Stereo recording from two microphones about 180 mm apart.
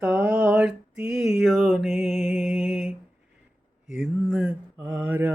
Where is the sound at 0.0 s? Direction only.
10° right (ahead or behind).